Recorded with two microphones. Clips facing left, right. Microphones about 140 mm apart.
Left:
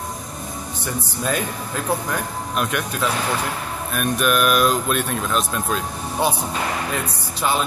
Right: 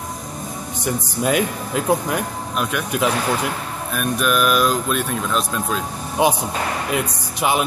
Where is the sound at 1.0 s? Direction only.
15° right (ahead or behind).